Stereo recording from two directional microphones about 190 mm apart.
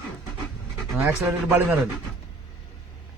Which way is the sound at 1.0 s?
10° right (ahead or behind).